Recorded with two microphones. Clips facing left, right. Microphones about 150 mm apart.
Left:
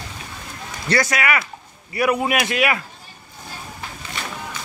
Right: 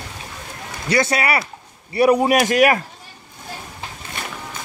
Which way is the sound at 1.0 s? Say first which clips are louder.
Right 3 dB; 30° right (ahead or behind).